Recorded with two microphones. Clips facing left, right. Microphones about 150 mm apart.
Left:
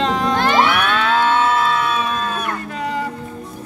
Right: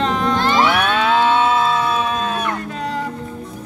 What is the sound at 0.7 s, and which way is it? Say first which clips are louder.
Music: right 1 dB; 20° right (ahead or behind).